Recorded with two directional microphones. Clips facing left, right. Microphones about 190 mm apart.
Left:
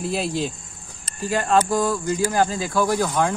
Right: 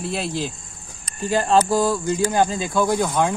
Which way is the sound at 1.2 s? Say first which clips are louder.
Right 2 dB; 30° right (ahead or behind).